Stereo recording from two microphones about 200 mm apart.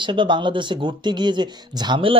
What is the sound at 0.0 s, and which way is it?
Speech, 25° right (ahead or behind).